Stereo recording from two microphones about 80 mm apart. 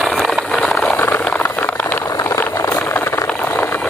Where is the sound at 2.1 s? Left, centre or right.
Left.